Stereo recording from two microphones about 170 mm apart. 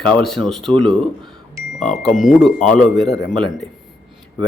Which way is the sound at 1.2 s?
25° right (ahead or behind).